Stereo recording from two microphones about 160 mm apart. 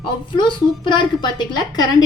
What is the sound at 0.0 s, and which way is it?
A woman's voice, 30° left (ahead or behind).